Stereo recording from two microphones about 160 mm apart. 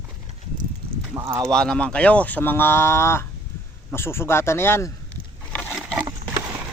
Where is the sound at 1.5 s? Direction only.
5° left (ahead or behind).